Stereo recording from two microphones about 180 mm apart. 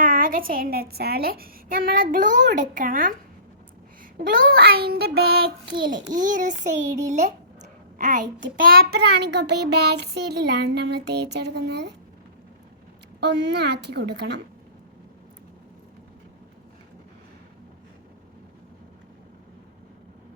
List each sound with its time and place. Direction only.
0.0 s a woman's voice: 50° right (ahead or behind)
4.3 s child singing: 55° right (ahead or behind)
6.1 s a woman's voice: 45° right (ahead or behind)
8.5 s child singing: 55° right (ahead or behind)
13.1 s child singing: 70° right (ahead or behind)